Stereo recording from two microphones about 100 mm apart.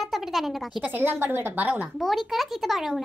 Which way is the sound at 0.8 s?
20° right (ahead or behind).